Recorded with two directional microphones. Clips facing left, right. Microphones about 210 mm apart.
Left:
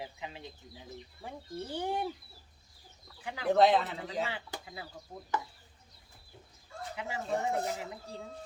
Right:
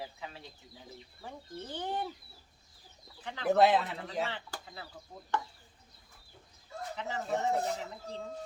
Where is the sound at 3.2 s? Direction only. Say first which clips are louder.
Left 1 dB; 10° left (ahead or behind).